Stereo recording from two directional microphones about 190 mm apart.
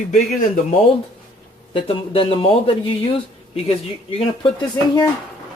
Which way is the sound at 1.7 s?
30° left (ahead or behind).